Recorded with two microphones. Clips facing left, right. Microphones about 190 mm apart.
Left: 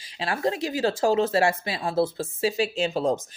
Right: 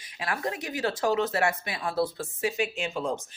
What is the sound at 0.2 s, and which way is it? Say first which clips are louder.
Speech: left 6 dB; 25° left (ahead or behind).